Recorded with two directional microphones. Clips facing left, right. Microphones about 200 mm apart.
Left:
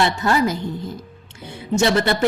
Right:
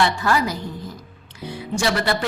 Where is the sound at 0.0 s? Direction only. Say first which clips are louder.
Left 2 dB; 25° left (ahead or behind).